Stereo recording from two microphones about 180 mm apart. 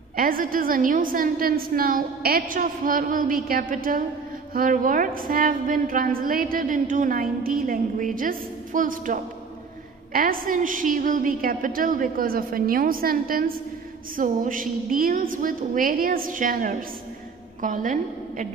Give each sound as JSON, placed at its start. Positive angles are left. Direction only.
{"t": 0.1, "sound": "a woman's voice", "side_deg": -50}